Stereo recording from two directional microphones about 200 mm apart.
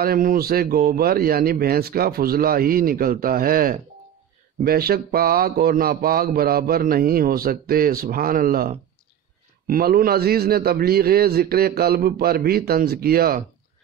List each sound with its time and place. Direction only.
0.0 s mantra: 45° right (ahead or behind)